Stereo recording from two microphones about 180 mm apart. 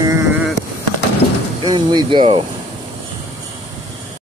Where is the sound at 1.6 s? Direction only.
25° right (ahead or behind).